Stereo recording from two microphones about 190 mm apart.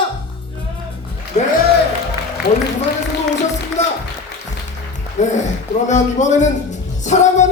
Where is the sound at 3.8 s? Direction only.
35° left (ahead or behind).